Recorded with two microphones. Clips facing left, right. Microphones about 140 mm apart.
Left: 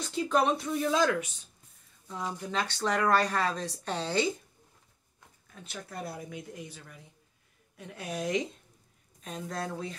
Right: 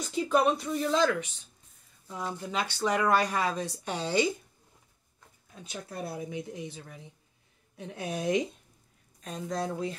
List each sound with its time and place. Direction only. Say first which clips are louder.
0.0 s speech: right 2 dB; 5° right (ahead or behind)
2.4 s a woman's voice: right 1 dB; 10° right (ahead or behind)
5.5 s speech: right 2 dB; 20° right (ahead or behind)
9.2 s speech: right 3 dB; centre (ahead or behind)